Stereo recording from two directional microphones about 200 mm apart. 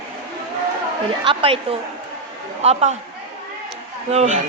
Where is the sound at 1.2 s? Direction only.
25° right (ahead or behind).